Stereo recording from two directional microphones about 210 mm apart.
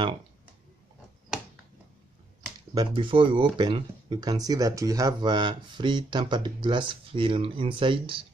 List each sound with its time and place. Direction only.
2.7 s speech: 20° right (ahead or behind)